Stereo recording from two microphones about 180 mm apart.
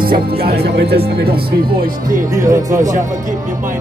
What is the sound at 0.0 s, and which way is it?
Music, 55° right (ahead or behind).